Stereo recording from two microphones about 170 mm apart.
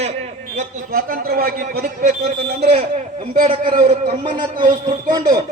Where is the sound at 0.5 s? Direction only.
55° right (ahead or behind).